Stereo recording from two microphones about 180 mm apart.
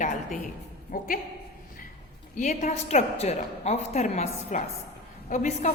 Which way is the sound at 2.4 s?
40° left (ahead or behind).